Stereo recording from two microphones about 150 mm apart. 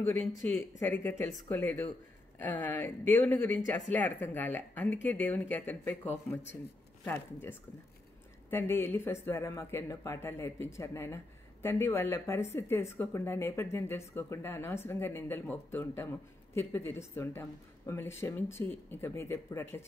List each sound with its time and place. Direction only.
0.6 s speech: 15° left (ahead or behind)
2.8 s speech: 15° left (ahead or behind)
8.5 s speech: 15° left (ahead or behind)